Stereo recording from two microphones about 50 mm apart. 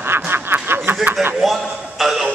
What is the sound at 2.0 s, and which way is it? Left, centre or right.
Speech, centre.